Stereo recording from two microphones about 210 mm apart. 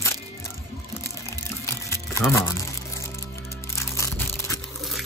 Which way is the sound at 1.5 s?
10° left (ahead or behind).